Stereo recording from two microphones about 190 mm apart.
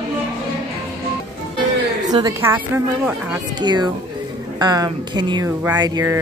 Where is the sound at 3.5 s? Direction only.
20° right (ahead or behind).